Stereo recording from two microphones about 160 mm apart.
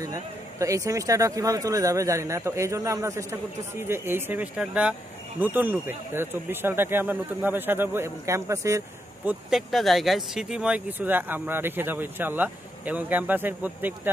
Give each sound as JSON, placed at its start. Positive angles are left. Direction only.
{"t": 0.0, "sound": "speech", "side_deg": -20}